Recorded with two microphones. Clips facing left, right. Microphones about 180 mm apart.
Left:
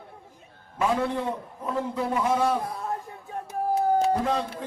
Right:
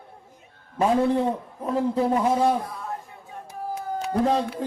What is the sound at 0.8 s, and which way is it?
A man's voice, 35° right (ahead or behind).